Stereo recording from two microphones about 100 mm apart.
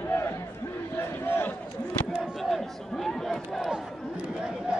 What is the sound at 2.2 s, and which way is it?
Speech, centre (ahead or behind).